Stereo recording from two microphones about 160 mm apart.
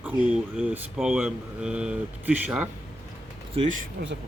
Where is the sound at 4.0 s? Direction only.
70° right (ahead or behind).